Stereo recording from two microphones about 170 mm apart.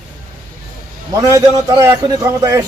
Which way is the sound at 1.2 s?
20° right (ahead or behind).